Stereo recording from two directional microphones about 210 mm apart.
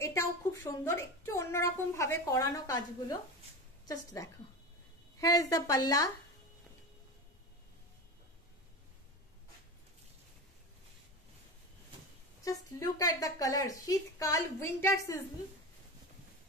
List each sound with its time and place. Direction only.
0.0 s a woman's voice: 15° left (ahead or behind)
5.4 s a woman's voice: 15° left (ahead or behind)
12.4 s a woman's voice: 15° left (ahead or behind)